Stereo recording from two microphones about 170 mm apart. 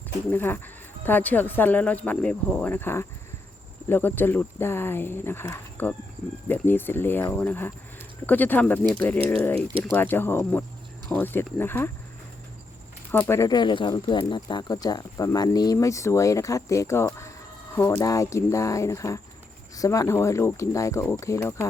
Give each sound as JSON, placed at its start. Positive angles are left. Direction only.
{"t": 0.3, "sound": "speech", "side_deg": 10}
{"t": 13.1, "sound": "speech", "side_deg": 10}